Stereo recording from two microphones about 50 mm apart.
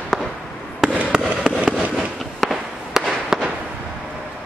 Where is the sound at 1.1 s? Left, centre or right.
Centre.